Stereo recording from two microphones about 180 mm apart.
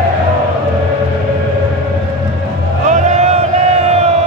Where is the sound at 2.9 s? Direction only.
35° right (ahead or behind).